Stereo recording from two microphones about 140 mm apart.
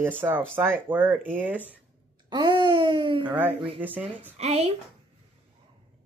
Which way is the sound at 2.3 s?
30° right (ahead or behind).